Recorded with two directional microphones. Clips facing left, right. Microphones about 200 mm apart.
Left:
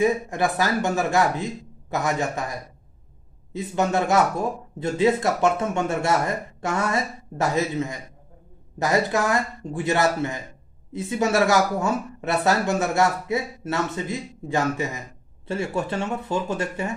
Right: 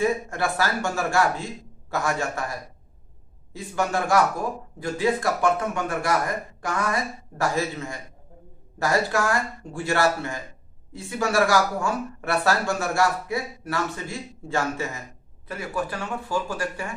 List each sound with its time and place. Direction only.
0.0 s speech: 20° left (ahead or behind)
3.5 s speech: 20° left (ahead or behind)